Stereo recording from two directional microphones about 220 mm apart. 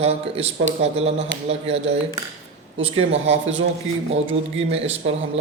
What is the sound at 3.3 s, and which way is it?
Speech, 55° right (ahead or behind).